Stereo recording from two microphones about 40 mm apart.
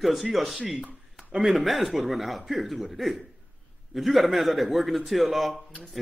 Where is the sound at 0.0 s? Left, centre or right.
Centre.